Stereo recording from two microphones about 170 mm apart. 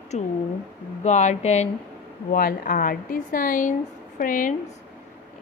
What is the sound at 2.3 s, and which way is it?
A woman's voice, 55° left (ahead or behind).